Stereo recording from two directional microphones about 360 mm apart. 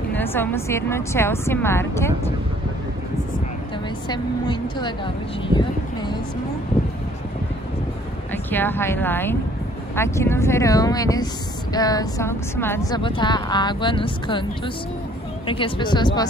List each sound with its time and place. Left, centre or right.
0.1 s a woman's voice: centre
4.1 s a woman's voice: centre
8.3 s a woman's voice: centre
15.4 s a woman's voice: centre